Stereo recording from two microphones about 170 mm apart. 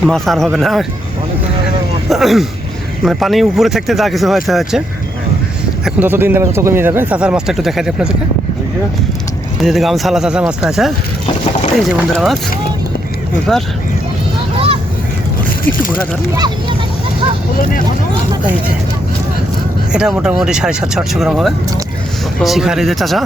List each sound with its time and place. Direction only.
0.0 s speech: centre (ahead or behind)
2.0 s speech: centre (ahead or behind)
5.8 s speech: 10° right (ahead or behind)
9.6 s speech: centre (ahead or behind)
13.5 s speech: centre (ahead or behind)
14.5 s vehicle: 35° right (ahead or behind)
19.9 s speech: 5° right (ahead or behind)